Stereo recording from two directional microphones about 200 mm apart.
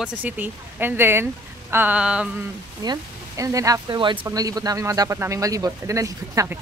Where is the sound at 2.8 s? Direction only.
15° right (ahead or behind).